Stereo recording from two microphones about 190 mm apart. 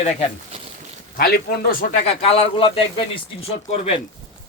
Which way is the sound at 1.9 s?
30° left (ahead or behind).